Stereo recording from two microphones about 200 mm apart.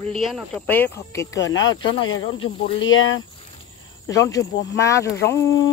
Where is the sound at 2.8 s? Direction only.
75° left (ahead or behind).